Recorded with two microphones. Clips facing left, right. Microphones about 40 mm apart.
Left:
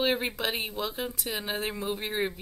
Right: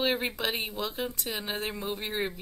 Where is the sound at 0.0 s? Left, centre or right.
Centre.